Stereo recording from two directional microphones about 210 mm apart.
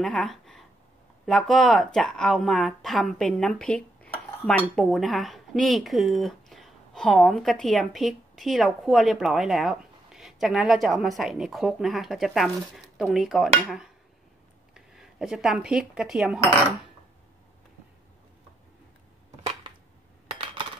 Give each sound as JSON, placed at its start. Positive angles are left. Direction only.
{"t": 0.0, "sound": "speech", "side_deg": 0}
{"t": 20.2, "sound": "coin", "side_deg": -25}